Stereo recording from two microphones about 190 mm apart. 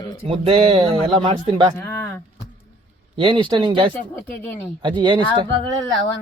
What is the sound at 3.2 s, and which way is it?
Speech, 25° right (ahead or behind).